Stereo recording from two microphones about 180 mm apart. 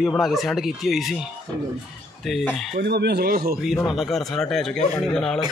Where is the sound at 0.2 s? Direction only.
Centre (ahead or behind).